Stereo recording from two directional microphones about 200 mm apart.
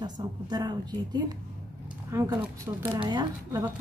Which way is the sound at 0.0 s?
20° right (ahead or behind).